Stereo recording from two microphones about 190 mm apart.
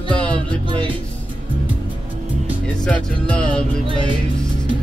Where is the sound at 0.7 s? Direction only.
25° right (ahead or behind).